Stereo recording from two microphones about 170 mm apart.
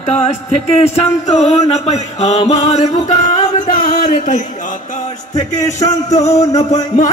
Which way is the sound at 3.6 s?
45° left (ahead or behind).